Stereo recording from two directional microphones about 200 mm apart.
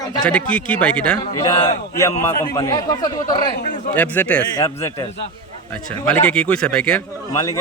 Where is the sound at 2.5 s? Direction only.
20° left (ahead or behind).